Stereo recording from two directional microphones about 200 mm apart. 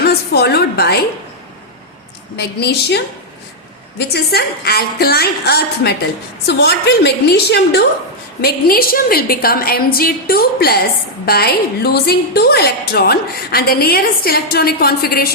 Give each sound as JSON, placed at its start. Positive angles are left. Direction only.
{"t": 0.3, "sound": "a woman's voice", "side_deg": 55}
{"t": 2.3, "sound": "a woman's voice", "side_deg": 55}